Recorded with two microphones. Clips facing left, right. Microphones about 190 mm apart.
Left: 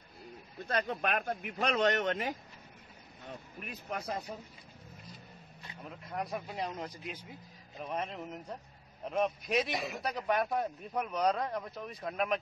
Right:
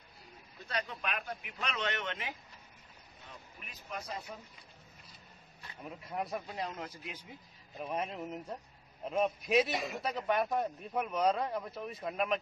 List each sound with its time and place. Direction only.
0.7 s speech: 50° left (ahead or behind)
3.3 s speech: 55° left (ahead or behind)
5.9 s speech: centre (ahead or behind)
6.5 s a man's voice: 15° left (ahead or behind)
7.8 s speech: 5° right (ahead or behind)